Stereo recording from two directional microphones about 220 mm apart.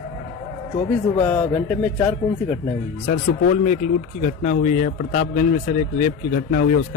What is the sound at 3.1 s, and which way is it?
A man's voice, 35° left (ahead or behind).